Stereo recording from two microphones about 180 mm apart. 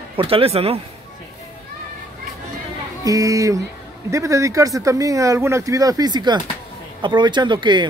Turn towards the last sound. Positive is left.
turn(degrees=-25)  # may be behind; listen again after turning